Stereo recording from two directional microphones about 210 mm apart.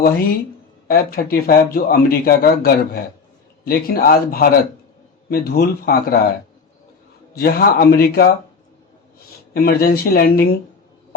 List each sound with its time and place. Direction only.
0.9 s speech: 45° left (ahead or behind)
7.3 s speech: 45° left (ahead or behind)
9.6 s speech: 45° left (ahead or behind)